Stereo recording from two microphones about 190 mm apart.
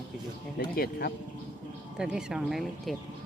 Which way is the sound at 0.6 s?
50° left (ahead or behind).